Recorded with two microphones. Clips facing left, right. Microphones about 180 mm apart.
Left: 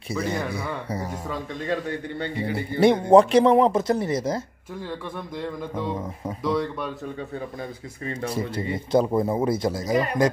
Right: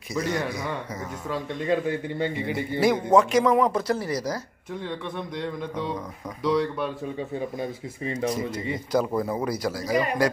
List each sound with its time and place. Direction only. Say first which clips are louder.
1.3 s speech: right 4 dB; 5° right (ahead or behind)
2.3 s a man's voice: left 1 dB; 35° left (ahead or behind)
6.4 s speech: right 2 dB; centre (ahead or behind)
8.3 s a man's voice: even; 30° left (ahead or behind)